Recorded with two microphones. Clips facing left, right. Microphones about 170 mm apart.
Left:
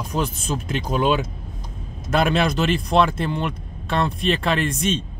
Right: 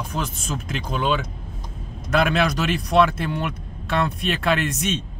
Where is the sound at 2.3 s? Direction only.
Centre (ahead or behind).